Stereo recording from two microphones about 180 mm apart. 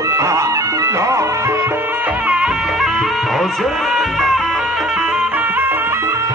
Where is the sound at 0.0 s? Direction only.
15° right (ahead or behind).